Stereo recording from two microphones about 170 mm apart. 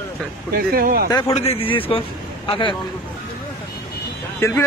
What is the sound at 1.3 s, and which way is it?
A man's voice, 35° left (ahead or behind).